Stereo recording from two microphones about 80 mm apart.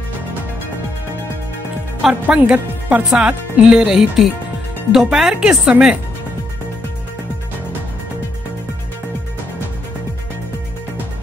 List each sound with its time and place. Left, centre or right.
2.2 s speech: centre